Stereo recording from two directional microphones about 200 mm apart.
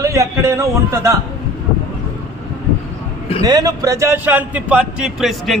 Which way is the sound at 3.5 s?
20° right (ahead or behind).